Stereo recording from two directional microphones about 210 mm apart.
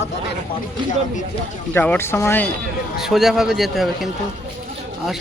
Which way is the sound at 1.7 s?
10° left (ahead or behind).